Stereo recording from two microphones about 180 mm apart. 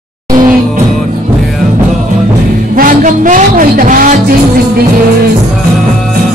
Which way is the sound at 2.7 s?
45° right (ahead or behind).